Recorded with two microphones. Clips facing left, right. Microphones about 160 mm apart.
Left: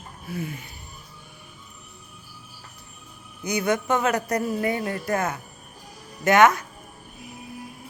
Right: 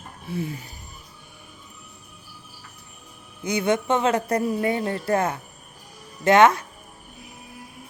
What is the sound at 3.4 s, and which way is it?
A man's voice, 25° right (ahead or behind).